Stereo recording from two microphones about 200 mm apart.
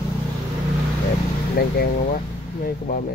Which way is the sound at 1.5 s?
50° left (ahead or behind).